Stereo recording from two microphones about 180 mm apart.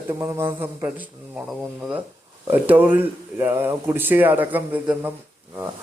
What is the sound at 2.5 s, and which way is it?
Speech, 10° right (ahead or behind).